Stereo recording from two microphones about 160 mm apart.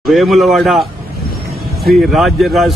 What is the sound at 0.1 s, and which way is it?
Speech, centre (ahead or behind).